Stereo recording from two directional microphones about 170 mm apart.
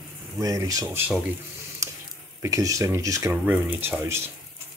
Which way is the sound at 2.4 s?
20° right (ahead or behind).